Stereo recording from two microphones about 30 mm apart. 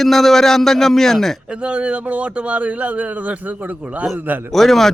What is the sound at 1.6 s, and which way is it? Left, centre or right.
Speech, right.